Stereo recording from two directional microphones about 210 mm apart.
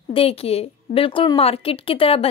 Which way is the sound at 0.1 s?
25° left (ahead or behind).